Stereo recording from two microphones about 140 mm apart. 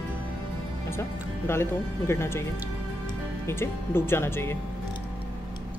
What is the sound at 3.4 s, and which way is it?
A woman's voice, 20° left (ahead or behind).